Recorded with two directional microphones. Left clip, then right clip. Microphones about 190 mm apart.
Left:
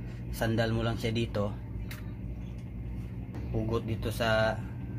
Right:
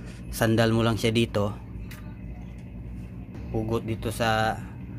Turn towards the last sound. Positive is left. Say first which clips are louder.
# right 3 dB
turn(degrees=-30)  # may be behind; listen again after turning